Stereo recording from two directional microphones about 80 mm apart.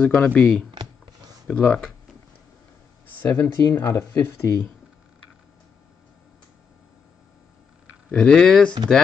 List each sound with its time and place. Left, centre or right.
0.0 s speech: centre
1.5 s speech: centre
3.2 s speech: left
8.1 s speech: centre